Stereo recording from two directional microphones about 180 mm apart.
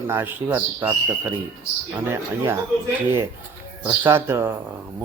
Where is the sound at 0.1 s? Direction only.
10° right (ahead or behind).